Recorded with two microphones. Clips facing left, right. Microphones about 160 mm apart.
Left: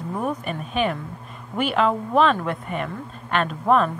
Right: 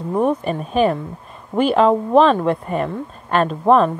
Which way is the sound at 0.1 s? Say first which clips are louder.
Right 9 dB; 30° right (ahead or behind).